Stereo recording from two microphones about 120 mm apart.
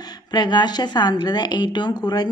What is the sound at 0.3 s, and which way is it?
A woman's voice, 35° left (ahead or behind).